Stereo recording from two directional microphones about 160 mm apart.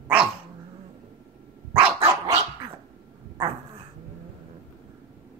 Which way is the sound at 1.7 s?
10° right (ahead or behind).